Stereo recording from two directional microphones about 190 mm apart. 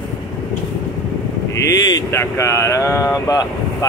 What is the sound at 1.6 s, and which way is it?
Speech, 20° left (ahead or behind).